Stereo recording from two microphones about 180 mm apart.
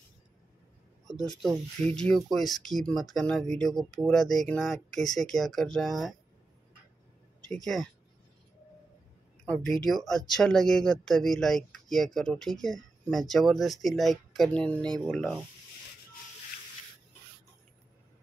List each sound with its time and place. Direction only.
1.1 s speech: 20° left (ahead or behind)
1.4 s speech: 5° left (ahead or behind)
7.4 s speech: centre (ahead or behind)
9.8 s speech: centre (ahead or behind)